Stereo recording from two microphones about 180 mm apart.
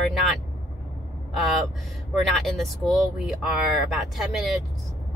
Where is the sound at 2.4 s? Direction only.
Centre (ahead or behind).